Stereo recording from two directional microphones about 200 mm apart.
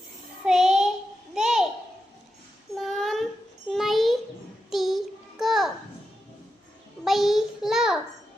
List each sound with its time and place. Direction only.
0.4 s child singing: centre (ahead or behind)
1.3 s a sound: centre (ahead or behind)
2.7 s child singing: centre (ahead or behind)
3.7 s a sound: centre (ahead or behind)
4.7 s child singing: centre (ahead or behind)
7.0 s child singing: centre (ahead or behind)